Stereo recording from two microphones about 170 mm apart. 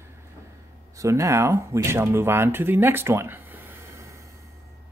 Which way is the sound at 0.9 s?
20° right (ahead or behind).